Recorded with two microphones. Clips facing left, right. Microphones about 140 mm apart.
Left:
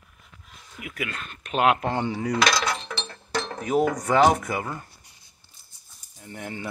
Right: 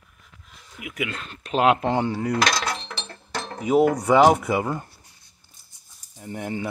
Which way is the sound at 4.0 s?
15° right (ahead or behind).